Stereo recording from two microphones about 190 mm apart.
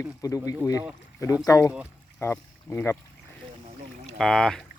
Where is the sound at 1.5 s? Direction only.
15° left (ahead or behind).